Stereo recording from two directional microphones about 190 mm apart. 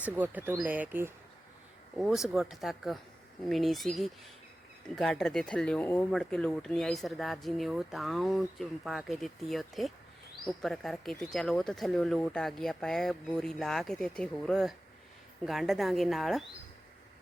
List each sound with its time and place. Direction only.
0.0 s speech: 10° right (ahead or behind)